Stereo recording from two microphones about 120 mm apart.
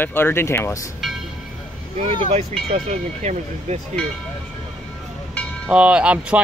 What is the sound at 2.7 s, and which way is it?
Speech, 65° right (ahead or behind).